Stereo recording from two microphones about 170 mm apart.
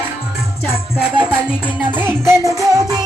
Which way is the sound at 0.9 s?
5° right (ahead or behind).